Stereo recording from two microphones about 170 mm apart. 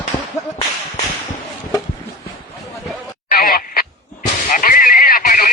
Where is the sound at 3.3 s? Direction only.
60° left (ahead or behind).